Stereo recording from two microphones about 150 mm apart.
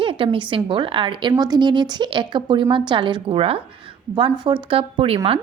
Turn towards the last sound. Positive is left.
turn(degrees=-40)  # may be behind; listen again after turning